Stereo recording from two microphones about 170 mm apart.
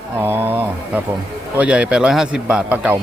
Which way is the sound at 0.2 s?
10° right (ahead or behind).